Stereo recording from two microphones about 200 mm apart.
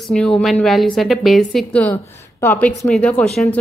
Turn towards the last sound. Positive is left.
turn(degrees=5)  # may be behind; listen again after turning